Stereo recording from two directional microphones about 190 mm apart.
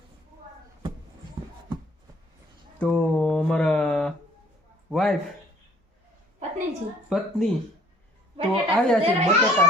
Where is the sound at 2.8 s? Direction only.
5° left (ahead or behind).